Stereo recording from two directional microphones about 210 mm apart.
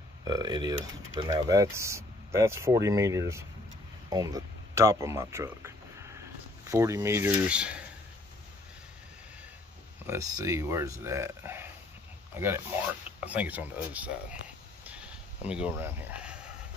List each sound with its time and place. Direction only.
0.2 s speech: 20° right (ahead or behind)
10.0 s speech: 15° right (ahead or behind)
14.9 s a sound: 5° right (ahead or behind)